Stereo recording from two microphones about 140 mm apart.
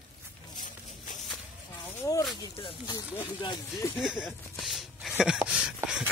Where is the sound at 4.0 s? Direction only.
5° right (ahead or behind).